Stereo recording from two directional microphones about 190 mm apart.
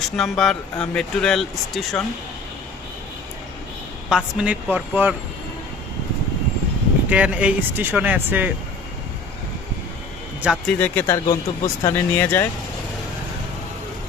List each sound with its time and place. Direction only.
0.0 s speech: centre (ahead or behind)
4.1 s speech: 5° right (ahead or behind)
7.1 s speech: 5° right (ahead or behind)
10.4 s speech: centre (ahead or behind)
10.8 s speech: 10° left (ahead or behind)